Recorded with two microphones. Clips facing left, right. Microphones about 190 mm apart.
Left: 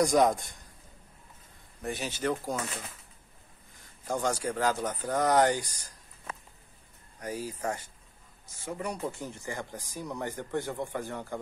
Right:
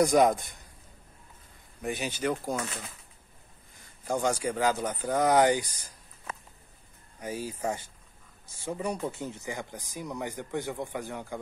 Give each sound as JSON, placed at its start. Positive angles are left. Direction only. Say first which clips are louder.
{"t": 0.0, "sound": "speech", "louder": "right 2 dB", "side_deg": 0}
{"t": 1.8, "sound": "speech", "louder": "right 2 dB", "side_deg": 0}
{"t": 4.1, "sound": "speech", "louder": "right 2 dB", "side_deg": 0}
{"t": 7.3, "sound": "speech", "louder": "right 2 dB", "side_deg": -25}
{"t": 8.6, "sound": "speech", "louder": "right 2 dB", "side_deg": -15}